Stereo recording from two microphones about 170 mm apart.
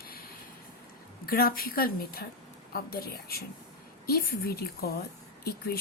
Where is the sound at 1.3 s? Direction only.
60° left (ahead or behind).